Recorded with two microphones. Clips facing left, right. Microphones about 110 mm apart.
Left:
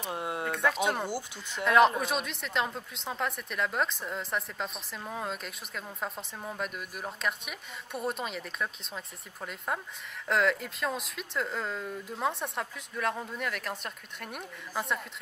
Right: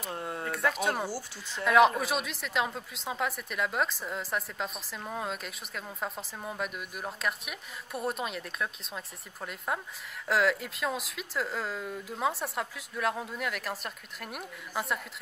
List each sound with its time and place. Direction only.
0.1 s a sound: 15° left (ahead or behind)
0.5 s speech: centre (ahead or behind)
1.0 s speech: 20° left (ahead or behind)
1.6 s a woman's voice: centre (ahead or behind)